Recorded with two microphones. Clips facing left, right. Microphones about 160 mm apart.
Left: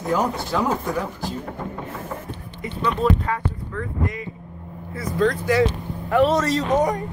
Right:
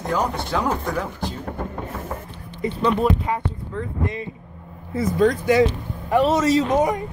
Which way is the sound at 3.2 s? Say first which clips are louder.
Right 1 dB; 20° right (ahead or behind).